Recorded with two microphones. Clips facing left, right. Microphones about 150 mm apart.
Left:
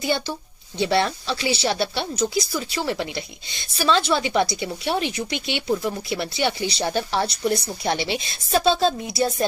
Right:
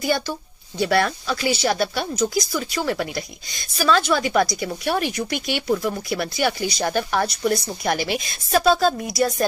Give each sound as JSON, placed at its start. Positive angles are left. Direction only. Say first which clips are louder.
{"t": 0.7, "sound": "speech", "louder": "right 1 dB", "side_deg": 25}